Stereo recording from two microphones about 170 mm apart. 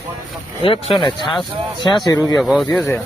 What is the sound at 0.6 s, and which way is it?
Speech, 30° left (ahead or behind).